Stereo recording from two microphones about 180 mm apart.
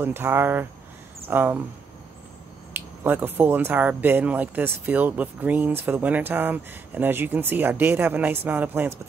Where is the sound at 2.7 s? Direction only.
10° right (ahead or behind).